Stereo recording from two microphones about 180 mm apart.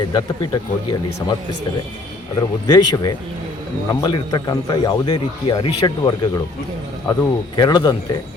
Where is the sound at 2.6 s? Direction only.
25° left (ahead or behind).